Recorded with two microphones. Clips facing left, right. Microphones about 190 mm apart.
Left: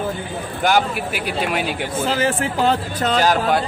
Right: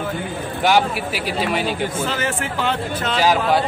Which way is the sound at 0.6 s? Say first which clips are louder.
Right 1 dB; centre (ahead or behind).